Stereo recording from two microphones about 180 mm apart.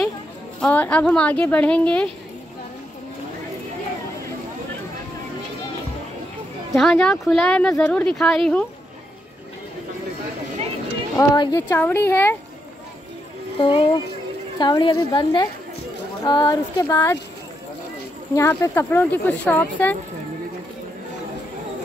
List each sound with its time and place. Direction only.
0.6 s speech: 5° left (ahead or behind)
6.7 s speech: centre (ahead or behind)
11.1 s a woman's voice: 20° left (ahead or behind)
13.6 s a woman's voice: 25° left (ahead or behind)
16.8 s speech: 15° left (ahead or behind)
18.3 s speech: 15° left (ahead or behind)